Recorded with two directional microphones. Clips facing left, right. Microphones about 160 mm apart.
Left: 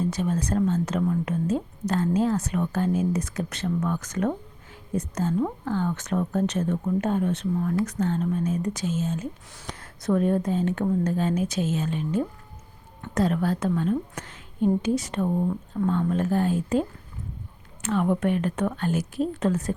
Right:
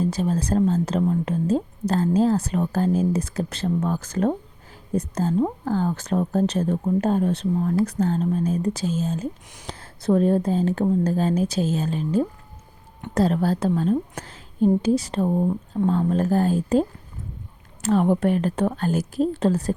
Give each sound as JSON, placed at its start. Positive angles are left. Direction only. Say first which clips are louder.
{"t": 0.0, "sound": "speech", "louder": "right 3 dB", "side_deg": -30}
{"t": 17.8, "sound": "speech", "louder": "right 4 dB", "side_deg": -35}